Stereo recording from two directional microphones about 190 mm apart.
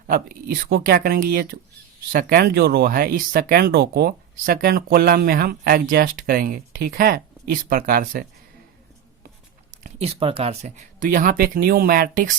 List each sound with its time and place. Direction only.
0.1 s speech: 50° right (ahead or behind)
9.8 s speech: 30° right (ahead or behind)